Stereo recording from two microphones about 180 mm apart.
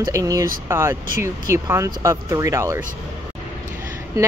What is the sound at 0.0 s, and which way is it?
A woman's voice, 20° right (ahead or behind).